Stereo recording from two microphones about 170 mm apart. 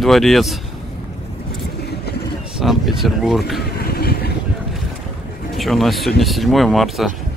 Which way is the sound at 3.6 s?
65° left (ahead or behind).